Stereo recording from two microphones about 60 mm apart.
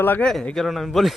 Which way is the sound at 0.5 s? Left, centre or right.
Centre.